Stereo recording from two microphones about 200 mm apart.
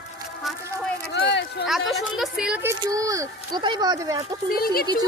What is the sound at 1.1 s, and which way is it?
Speech, 60° left (ahead or behind).